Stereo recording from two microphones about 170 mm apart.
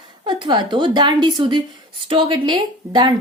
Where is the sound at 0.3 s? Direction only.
25° right (ahead or behind).